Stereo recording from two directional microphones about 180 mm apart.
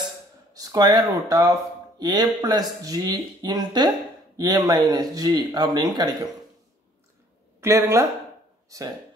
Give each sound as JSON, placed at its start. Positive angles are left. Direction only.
{"t": 0.5, "sound": "speech", "side_deg": -20}
{"t": 7.6, "sound": "speech", "side_deg": -15}